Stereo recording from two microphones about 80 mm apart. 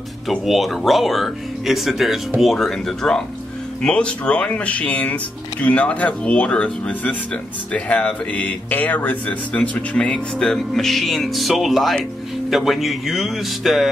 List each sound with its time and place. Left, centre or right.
0.3 s speech: centre